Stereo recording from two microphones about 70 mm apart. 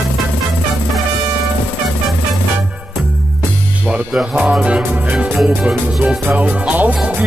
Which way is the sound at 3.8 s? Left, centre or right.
Centre.